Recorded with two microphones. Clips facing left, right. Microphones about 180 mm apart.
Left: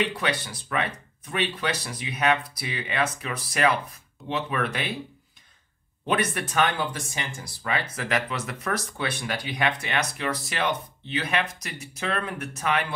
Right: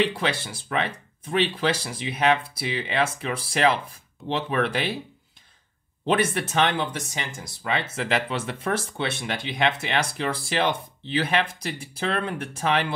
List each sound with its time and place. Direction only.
0.0 s speech: 25° right (ahead or behind)
6.0 s speech: 30° right (ahead or behind)